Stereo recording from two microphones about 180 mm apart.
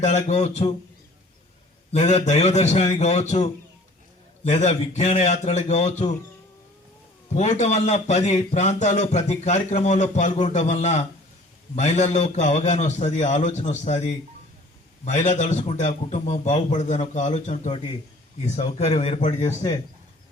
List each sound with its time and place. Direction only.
0.0 s a man's voice: 40° left (ahead or behind)
1.9 s a man's voice: 40° left (ahead or behind)
7.3 s a man's voice: 40° left (ahead or behind)